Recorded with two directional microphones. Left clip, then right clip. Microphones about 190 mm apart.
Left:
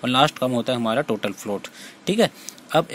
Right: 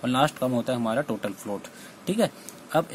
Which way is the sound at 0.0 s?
15° left (ahead or behind).